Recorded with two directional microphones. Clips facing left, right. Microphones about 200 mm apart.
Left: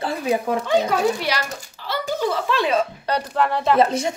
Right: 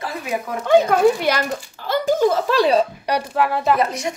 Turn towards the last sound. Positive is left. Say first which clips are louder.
# left 2 dB
turn(degrees=30)  # may be behind; listen again after turning